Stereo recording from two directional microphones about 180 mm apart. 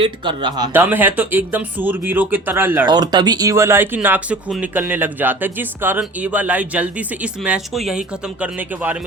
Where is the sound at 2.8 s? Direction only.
25° right (ahead or behind).